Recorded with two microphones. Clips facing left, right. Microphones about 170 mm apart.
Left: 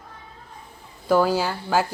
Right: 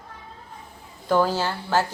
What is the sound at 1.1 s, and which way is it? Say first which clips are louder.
Speech: left 2 dB; 10° left (ahead or behind).